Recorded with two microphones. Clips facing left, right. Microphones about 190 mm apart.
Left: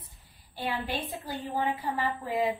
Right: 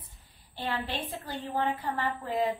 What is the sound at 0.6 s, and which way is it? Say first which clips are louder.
A woman's voice: left 1 dB; 10° left (ahead or behind).